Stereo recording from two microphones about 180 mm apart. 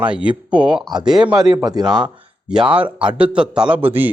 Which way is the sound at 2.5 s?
5° right (ahead or behind).